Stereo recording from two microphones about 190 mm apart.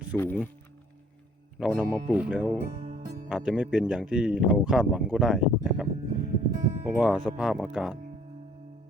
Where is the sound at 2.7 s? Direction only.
40° right (ahead or behind).